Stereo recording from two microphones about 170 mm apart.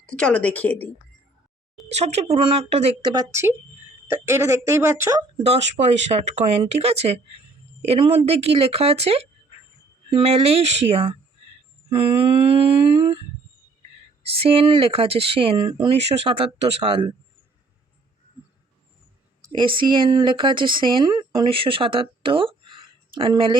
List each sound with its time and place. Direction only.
0.1 s speech: 5° left (ahead or behind)
1.9 s speech: 40° right (ahead or behind)
4.1 s speech: 15° right (ahead or behind)
5.4 s speech: 40° right (ahead or behind)
14.3 s speech: 35° right (ahead or behind)
19.5 s speech: 30° right (ahead or behind)